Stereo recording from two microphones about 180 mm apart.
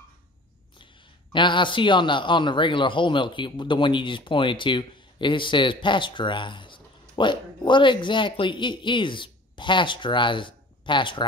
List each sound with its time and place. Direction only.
1.3 s a man's voice: 25° left (ahead or behind)